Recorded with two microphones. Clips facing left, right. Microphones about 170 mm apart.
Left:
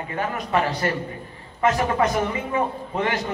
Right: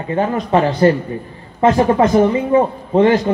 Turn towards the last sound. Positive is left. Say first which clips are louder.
# right 13 dB
turn(degrees=-30)  # may be behind; listen again after turning